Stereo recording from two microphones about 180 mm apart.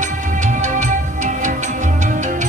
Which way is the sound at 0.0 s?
45° right (ahead or behind).